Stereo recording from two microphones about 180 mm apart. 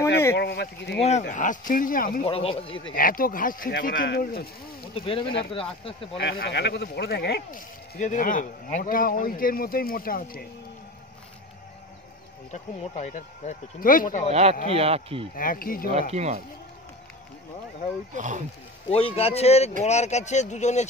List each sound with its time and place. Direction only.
0.4 s speech: 65° left (ahead or behind)
1.0 s speech: 40° left (ahead or behind)
2.2 s speech: 30° left (ahead or behind)
2.9 s speech: 50° left (ahead or behind)
4.9 s speech: 30° left (ahead or behind)
6.1 s speech: 60° left (ahead or behind)
8.0 s speech: 45° left (ahead or behind)
12.9 s speech: 40° left (ahead or behind)
14.3 s a man's voice: 35° right (ahead or behind)
15.3 s speech: 50° left (ahead or behind)
15.9 s a man's voice: 35° right (ahead or behind)
18.1 s speech: 45° right (ahead or behind)
18.9 s speech: 30° left (ahead or behind)